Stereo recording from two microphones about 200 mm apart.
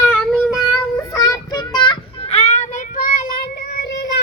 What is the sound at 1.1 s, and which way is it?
Child singing, 20° left (ahead or behind).